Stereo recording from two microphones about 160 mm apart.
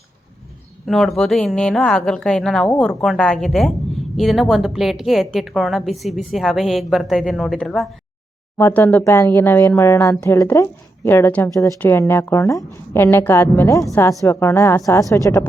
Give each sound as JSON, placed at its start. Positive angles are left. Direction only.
{"t": 0.9, "sound": "a woman's voice", "side_deg": 0}